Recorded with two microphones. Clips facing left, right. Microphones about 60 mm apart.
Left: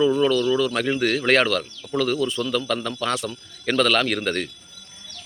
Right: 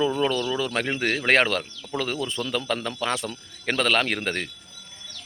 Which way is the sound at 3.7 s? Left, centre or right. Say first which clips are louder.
Left 3 dB; right.